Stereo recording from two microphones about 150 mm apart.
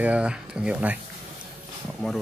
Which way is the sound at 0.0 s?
10° right (ahead or behind).